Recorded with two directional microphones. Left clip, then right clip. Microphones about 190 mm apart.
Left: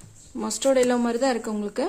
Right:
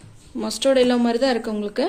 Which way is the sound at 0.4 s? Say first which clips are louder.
Right 3 dB; 40° left (ahead or behind).